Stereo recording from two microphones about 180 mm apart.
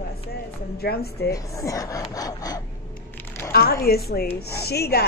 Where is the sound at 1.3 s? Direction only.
20° left (ahead or behind).